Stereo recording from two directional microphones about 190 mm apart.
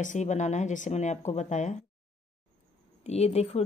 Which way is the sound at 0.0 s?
40° left (ahead or behind).